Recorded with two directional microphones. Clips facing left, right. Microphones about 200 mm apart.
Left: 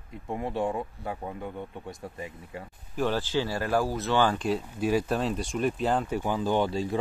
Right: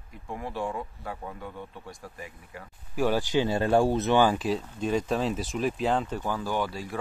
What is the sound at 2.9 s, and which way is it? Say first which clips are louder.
Speech: right 2 dB; 10° right (ahead or behind).